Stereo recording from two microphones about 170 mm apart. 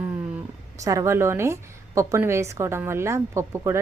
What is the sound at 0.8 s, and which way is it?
A woman's voice, 20° right (ahead or behind).